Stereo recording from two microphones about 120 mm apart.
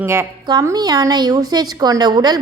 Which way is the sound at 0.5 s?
30° right (ahead or behind).